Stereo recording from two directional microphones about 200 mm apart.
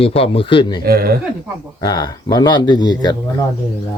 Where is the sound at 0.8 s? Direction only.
50° right (ahead or behind).